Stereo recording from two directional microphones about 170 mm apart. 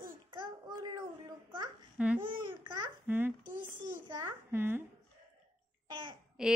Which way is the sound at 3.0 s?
10° right (ahead or behind).